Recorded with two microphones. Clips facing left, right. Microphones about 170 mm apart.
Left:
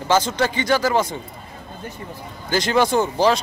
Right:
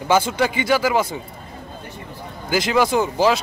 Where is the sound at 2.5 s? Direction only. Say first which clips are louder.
Even; centre (ahead or behind).